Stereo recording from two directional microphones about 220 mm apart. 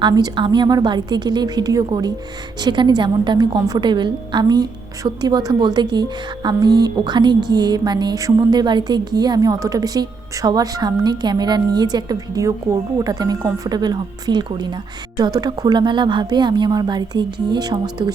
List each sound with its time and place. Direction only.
0.0 s a woman's voice: 20° right (ahead or behind)